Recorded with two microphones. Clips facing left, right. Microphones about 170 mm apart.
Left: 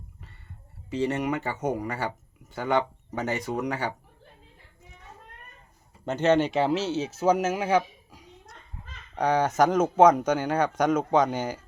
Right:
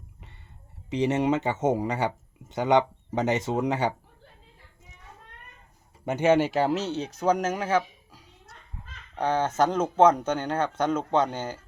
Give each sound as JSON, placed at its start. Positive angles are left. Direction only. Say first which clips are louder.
{"t": 0.9, "sound": "speech", "louder": "right 3 dB", "side_deg": -20}
{"t": 6.1, "sound": "speech", "louder": "right 1 dB", "side_deg": -10}